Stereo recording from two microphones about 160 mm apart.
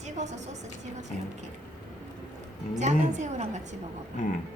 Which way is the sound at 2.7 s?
45° right (ahead or behind).